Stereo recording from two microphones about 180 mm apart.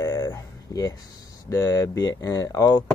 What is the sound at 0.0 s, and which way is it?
Speech, 20° left (ahead or behind).